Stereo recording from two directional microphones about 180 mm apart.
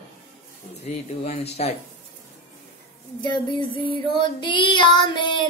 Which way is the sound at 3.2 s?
25° left (ahead or behind).